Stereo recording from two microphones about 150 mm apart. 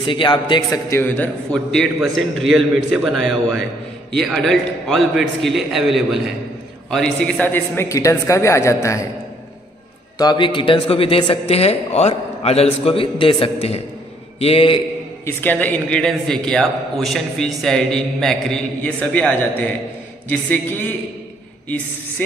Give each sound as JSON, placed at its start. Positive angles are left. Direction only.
{"t": 0.0, "sound": "a man's voice", "side_deg": 30}
{"t": 10.1, "sound": "speech", "side_deg": 30}
{"t": 15.2, "sound": "a man's voice", "side_deg": 10}